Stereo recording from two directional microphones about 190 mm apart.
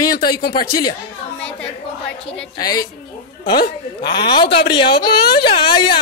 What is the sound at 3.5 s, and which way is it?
Speech, 55° left (ahead or behind).